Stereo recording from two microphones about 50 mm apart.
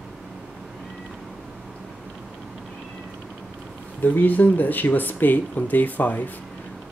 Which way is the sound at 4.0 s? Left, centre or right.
Left.